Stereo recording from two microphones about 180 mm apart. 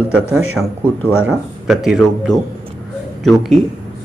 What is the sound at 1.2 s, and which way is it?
Speech, 5° right (ahead or behind).